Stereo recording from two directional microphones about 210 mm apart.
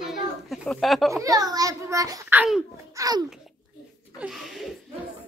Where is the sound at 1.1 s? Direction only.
15° right (ahead or behind).